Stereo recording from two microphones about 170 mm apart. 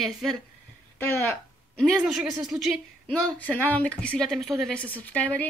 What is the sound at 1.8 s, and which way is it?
A woman's voice, centre (ahead or behind).